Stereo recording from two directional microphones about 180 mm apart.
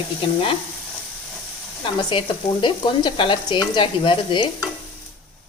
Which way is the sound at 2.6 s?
25° left (ahead or behind).